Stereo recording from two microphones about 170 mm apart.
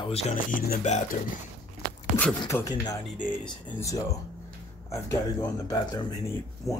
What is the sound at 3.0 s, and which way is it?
Speech, 5° left (ahead or behind).